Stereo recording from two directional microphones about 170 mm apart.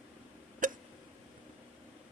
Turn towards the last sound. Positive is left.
turn(degrees=-50)  # may be behind; listen again after turning